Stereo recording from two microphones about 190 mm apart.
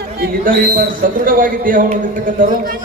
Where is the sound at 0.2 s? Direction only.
50° right (ahead or behind).